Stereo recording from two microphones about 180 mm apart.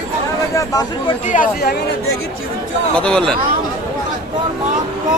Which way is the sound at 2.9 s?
5° left (ahead or behind).